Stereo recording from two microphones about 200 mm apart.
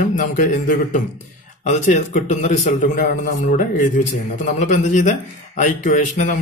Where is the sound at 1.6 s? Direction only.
40° left (ahead or behind).